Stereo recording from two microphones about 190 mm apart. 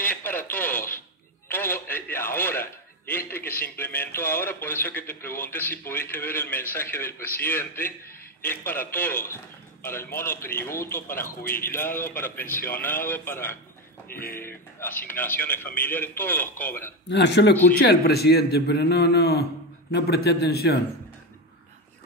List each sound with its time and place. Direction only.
0.0 s radio: 10° left (ahead or behind)
1.5 s a man's voice: 10° left (ahead or behind)
14.0 s speech: 50° left (ahead or behind)
14.3 s a man's voice: 10° left (ahead or behind)
17.1 s a man's voice: 65° left (ahead or behind)